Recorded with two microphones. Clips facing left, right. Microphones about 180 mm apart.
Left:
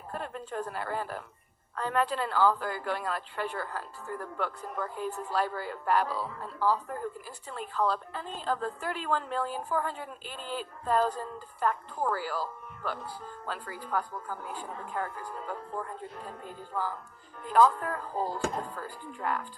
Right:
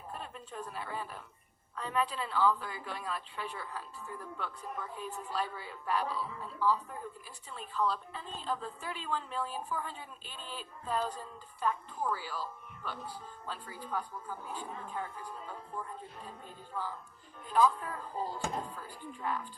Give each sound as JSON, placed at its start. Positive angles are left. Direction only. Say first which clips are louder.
{"t": 0.1, "sound": "a woman's voice", "louder": "left 9 dB", "side_deg": 75}
{"t": 7.9, "sound": "a woman's voice", "louder": "left 5 dB", "side_deg": 85}
{"t": 9.6, "sound": "a woman's voice", "louder": "left 7 dB", "side_deg": 75}
{"t": 11.0, "sound": "a woman's voice", "louder": "left 8 dB", "side_deg": 70}
{"t": 16.7, "sound": "a woman's voice", "louder": "left 5 dB", "side_deg": 90}
{"t": 17.5, "sound": "a woman's voice", "louder": "left 5 dB", "side_deg": 70}